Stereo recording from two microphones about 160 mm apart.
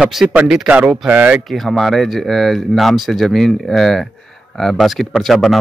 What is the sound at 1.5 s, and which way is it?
Speech, centre (ahead or behind).